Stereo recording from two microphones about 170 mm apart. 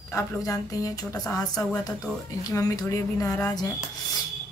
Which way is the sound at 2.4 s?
20° left (ahead or behind).